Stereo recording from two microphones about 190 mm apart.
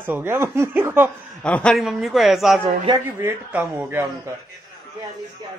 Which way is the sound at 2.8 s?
20° right (ahead or behind).